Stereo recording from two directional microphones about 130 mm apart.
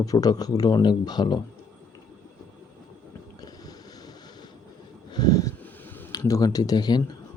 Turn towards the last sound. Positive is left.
turn(degrees=30)  # may be behind; listen again after turning